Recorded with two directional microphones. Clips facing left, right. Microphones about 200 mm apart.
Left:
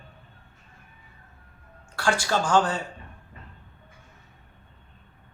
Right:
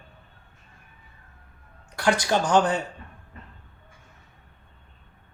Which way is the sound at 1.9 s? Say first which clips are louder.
Right 2 dB; 20° right (ahead or behind).